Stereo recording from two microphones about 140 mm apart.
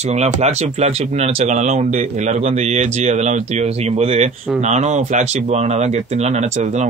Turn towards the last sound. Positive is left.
turn(degrees=-55)  # may be behind; listen again after turning